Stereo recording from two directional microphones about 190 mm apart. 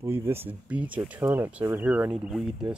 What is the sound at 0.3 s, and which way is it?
Speech, 10° right (ahead or behind).